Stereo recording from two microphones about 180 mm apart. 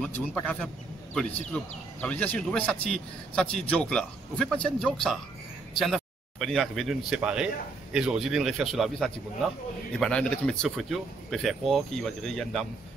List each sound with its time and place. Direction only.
0.0 s a man's voice: 10° left (ahead or behind)
2.0 s a man's voice: 10° left (ahead or behind)